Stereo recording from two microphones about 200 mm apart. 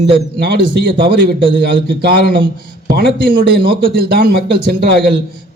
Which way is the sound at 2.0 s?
50° right (ahead or behind).